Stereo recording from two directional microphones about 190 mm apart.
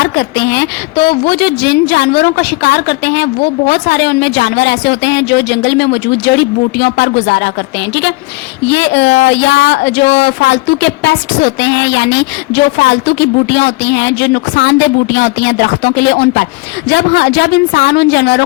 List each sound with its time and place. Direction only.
0.0 s a woman's voice: 65° left (ahead or behind)
8.6 s a woman's voice: 65° left (ahead or behind)